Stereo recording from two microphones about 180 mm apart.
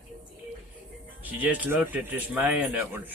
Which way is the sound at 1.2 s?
10° right (ahead or behind).